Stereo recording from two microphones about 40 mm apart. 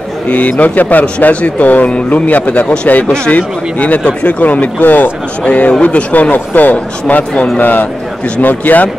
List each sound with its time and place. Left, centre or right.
0.3 s a man's voice: left
2.6 s speech: left
3.3 s speech: left
6.3 s a man's voice: left